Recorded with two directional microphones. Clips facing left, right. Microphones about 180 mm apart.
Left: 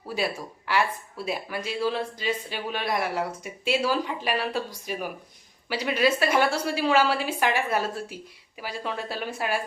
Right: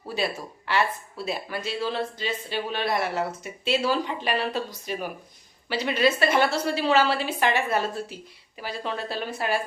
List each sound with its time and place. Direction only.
0.1 s speech: 10° left (ahead or behind)